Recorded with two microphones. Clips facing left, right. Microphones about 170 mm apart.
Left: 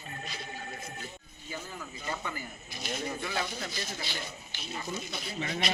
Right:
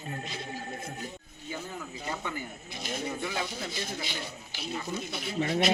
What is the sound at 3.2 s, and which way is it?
Speech, 15° right (ahead or behind).